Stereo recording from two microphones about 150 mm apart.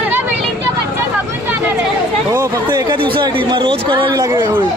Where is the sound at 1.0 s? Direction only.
15° right (ahead or behind).